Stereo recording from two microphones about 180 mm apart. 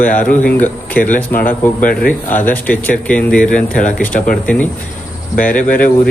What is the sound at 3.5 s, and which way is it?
Speech, 45° left (ahead or behind).